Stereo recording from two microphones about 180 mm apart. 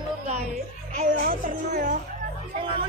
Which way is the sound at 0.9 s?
45° right (ahead or behind).